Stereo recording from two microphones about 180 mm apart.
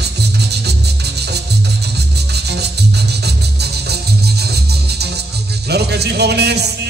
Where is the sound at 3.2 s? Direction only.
65° right (ahead or behind).